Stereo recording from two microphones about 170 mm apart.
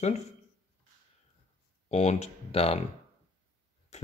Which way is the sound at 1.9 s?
40° left (ahead or behind).